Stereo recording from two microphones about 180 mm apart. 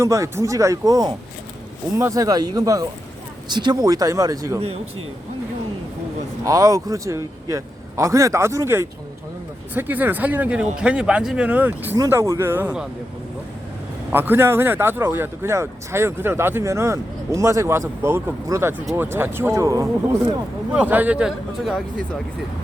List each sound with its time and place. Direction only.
0.0 s speech: 15° right (ahead or behind)
6.4 s speech: 20° right (ahead or behind)
14.1 s a man's voice: 10° right (ahead or behind)